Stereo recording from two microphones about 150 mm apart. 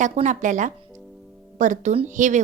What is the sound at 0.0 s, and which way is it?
A woman's voice, 55° right (ahead or behind).